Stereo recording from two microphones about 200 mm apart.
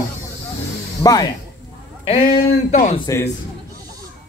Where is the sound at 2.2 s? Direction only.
40° left (ahead or behind).